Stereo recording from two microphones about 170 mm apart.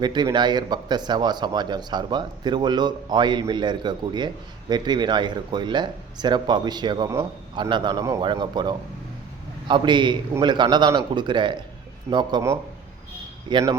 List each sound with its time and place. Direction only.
0.0 s speech: 25° right (ahead or behind)